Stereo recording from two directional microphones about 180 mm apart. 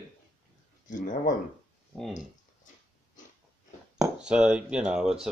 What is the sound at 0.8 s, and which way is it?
Speech, 45° left (ahead or behind).